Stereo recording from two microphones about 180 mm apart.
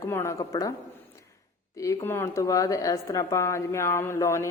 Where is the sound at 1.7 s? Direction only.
15° left (ahead or behind).